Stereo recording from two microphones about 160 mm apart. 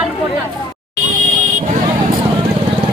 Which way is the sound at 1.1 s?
55° right (ahead or behind).